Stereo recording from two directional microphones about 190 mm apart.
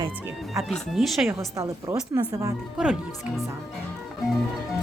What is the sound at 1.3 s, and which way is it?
A woman's voice, 15° right (ahead or behind).